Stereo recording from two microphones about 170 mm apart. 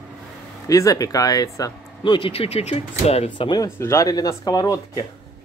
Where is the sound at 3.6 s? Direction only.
15° left (ahead or behind).